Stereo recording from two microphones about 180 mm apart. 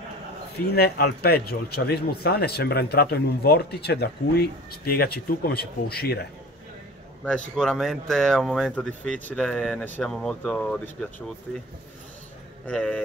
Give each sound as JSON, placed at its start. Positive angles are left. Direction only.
{"t": 0.7, "sound": "a man's voice", "side_deg": 65}
{"t": 7.2, "sound": "speech", "side_deg": 5}
{"t": 12.6, "sound": "speech", "side_deg": 5}